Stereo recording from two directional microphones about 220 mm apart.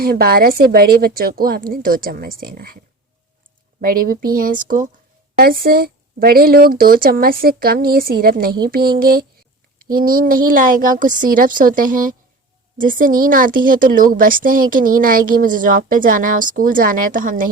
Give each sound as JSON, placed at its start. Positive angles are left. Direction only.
{"t": 0.0, "sound": "a woman's voice", "side_deg": -45}
{"t": 3.8, "sound": "a woman's voice", "side_deg": -40}